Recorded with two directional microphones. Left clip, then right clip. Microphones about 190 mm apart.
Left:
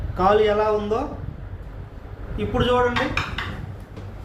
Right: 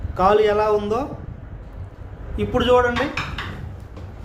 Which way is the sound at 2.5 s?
60° right (ahead or behind).